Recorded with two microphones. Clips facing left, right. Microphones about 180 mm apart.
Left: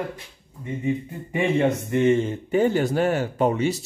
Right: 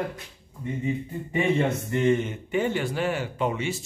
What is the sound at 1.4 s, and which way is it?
A man's voice, 20° left (ahead or behind).